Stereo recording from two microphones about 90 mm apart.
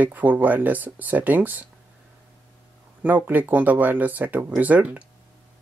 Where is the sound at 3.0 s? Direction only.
20° right (ahead or behind).